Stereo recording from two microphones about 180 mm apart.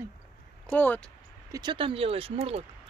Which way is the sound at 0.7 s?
10° left (ahead or behind).